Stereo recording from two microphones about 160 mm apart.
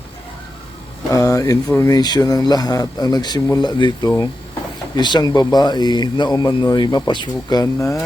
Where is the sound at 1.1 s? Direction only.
20° left (ahead or behind).